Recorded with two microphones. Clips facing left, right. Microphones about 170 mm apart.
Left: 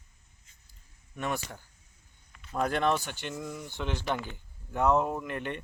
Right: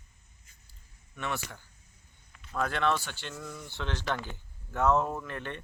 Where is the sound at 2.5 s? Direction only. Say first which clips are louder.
Left 2 dB; 15° left (ahead or behind).